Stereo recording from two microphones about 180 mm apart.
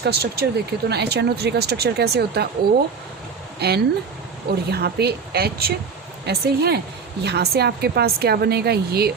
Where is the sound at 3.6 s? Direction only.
65° right (ahead or behind).